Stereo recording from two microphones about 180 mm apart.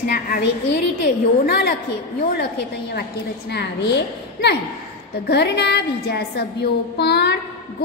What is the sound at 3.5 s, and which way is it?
A woman's voice, 70° left (ahead or behind).